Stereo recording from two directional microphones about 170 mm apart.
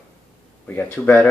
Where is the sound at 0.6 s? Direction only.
10° left (ahead or behind).